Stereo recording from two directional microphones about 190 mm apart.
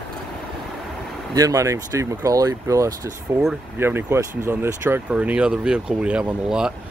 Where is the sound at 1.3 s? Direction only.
15° right (ahead or behind).